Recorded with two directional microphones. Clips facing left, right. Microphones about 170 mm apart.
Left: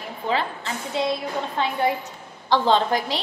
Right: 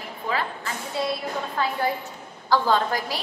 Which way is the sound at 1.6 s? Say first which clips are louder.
Left 2 dB; 20° left (ahead or behind).